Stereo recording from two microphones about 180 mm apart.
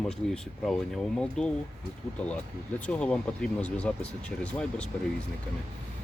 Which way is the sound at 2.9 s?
5° left (ahead or behind).